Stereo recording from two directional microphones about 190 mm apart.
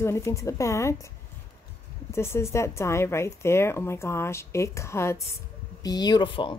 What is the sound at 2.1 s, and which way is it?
A woman's voice, 15° left (ahead or behind).